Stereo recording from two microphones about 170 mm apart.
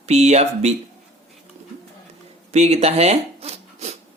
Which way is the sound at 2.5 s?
40° right (ahead or behind).